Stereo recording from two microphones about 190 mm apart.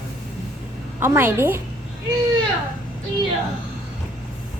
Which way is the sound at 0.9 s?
10° right (ahead or behind).